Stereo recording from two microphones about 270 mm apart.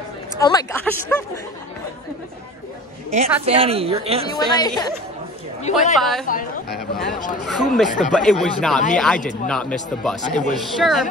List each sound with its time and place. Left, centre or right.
0.4 s a woman's voice: centre
3.1 s a woman's voice: right
4.3 s a woman's voice: centre
5.6 s a woman's voice: left
5.9 s speech: centre
6.2 s speech: left
7.4 s speech: centre
9.2 s a woman's voice: left
9.5 s speech: centre